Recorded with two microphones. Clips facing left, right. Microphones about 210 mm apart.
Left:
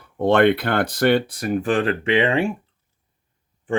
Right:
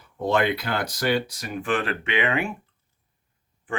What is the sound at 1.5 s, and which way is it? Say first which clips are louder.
Speech: left 5 dB; 35° left (ahead or behind).